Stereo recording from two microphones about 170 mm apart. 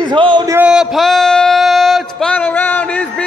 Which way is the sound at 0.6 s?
5° right (ahead or behind).